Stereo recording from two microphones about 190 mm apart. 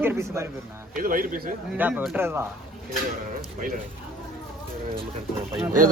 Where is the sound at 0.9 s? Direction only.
45° right (ahead or behind).